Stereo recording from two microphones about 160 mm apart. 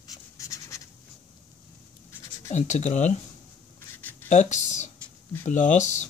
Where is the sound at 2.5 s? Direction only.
45° left (ahead or behind).